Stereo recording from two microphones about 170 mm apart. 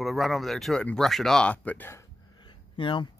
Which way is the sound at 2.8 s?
30° left (ahead or behind).